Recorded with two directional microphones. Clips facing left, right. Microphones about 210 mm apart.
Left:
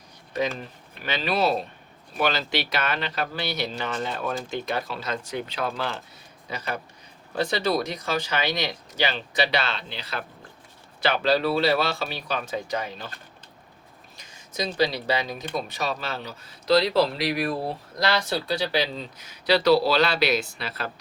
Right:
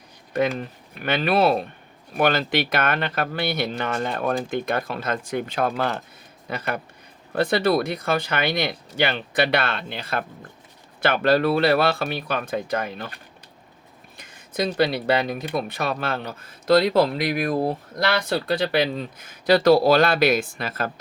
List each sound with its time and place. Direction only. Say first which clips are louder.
1.0 s speech: right 5 dB; 55° right (ahead or behind)
14.2 s a sound: right 5 dB; 55° right (ahead or behind)
14.8 s speech: right 3 dB; 55° right (ahead or behind)